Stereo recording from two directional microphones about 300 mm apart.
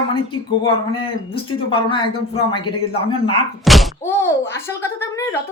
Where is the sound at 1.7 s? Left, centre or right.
Centre.